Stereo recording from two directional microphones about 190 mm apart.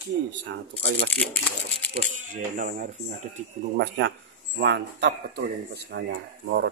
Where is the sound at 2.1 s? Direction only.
45° right (ahead or behind).